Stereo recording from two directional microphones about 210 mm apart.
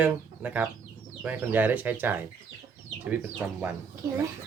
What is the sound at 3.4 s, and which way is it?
Speech, 5° right (ahead or behind).